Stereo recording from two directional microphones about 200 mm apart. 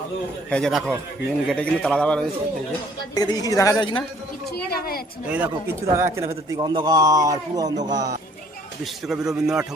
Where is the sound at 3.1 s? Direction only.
20° left (ahead or behind).